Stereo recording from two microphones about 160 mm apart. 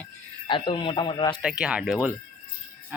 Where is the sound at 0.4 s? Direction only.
30° left (ahead or behind).